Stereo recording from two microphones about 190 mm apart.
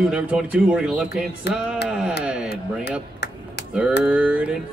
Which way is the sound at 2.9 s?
60° left (ahead or behind).